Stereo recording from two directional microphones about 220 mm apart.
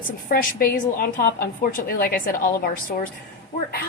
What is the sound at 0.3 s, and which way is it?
A woman's voice, 40° left (ahead or behind).